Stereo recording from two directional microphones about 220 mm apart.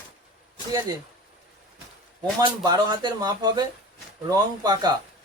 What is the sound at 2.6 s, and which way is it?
Speech, 15° right (ahead or behind).